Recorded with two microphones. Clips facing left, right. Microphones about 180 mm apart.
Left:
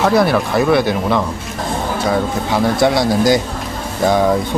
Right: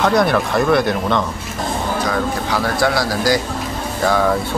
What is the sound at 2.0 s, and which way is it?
Speech, 20° left (ahead or behind).